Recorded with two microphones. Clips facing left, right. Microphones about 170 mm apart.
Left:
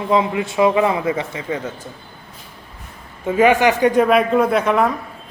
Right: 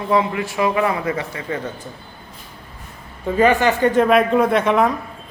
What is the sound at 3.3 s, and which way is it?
Speech, 15° left (ahead or behind).